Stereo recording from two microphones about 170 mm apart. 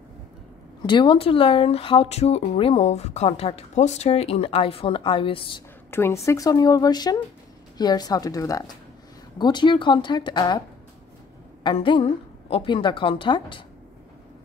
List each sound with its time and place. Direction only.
0.8 s speech: 30° left (ahead or behind)
5.9 s a woman's voice: 15° left (ahead or behind)
11.6 s a woman's voice: 30° left (ahead or behind)